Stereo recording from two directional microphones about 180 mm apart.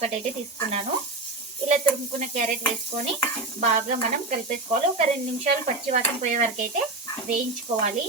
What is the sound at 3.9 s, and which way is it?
Speech, 45° right (ahead or behind).